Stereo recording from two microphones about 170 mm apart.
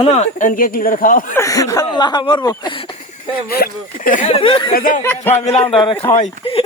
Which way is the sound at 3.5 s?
55° left (ahead or behind).